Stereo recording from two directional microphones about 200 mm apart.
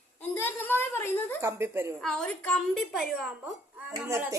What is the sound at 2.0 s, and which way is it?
A woman's voice, 5° left (ahead or behind).